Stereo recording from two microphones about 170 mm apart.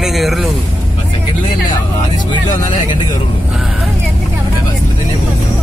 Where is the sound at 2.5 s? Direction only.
50° left (ahead or behind).